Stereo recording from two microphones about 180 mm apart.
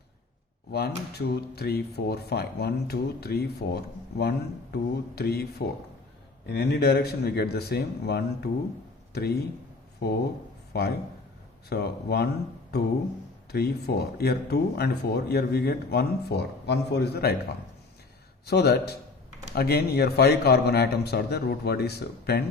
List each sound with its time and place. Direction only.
0.7 s speech: 65° left (ahead or behind)
13.5 s speech: 60° left (ahead or behind)
18.4 s speech: 65° left (ahead or behind)